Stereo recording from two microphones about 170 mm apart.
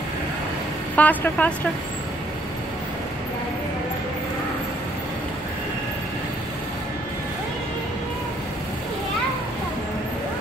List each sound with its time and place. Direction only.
0.9 s a woman's voice: 10° left (ahead or behind)